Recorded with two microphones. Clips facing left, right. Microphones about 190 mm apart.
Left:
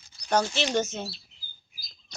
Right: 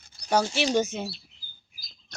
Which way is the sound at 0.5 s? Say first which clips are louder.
Right 2 dB; 10° right (ahead or behind).